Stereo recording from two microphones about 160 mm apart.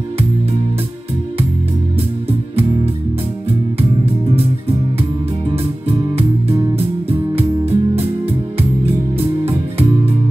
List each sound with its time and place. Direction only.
2.2 s music: 40° right (ahead or behind)
5.9 s music: 40° right (ahead or behind)